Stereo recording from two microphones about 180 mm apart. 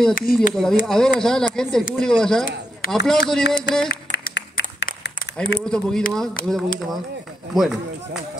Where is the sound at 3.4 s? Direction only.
70° left (ahead or behind).